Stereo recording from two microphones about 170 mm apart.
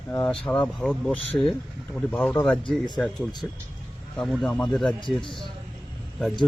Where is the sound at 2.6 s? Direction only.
25° left (ahead or behind).